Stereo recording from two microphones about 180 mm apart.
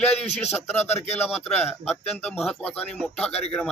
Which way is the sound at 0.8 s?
35° left (ahead or behind).